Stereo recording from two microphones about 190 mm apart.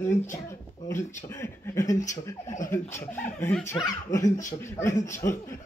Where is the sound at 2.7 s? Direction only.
10° left (ahead or behind).